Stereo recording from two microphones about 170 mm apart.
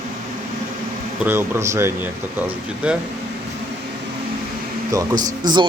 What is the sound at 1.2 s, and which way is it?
Speech, 15° right (ahead or behind).